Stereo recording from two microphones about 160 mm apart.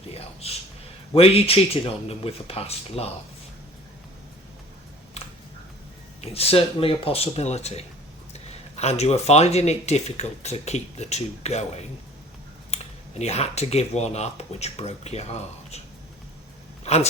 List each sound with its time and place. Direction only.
0.1 s a sound: 40° left (ahead or behind)
1.1 s speech: 40° left (ahead or behind)
6.2 s speech: 40° left (ahead or behind)
16.8 s speech: 40° left (ahead or behind)